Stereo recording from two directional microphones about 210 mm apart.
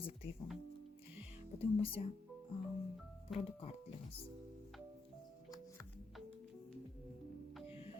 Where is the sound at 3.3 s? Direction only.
25° left (ahead or behind).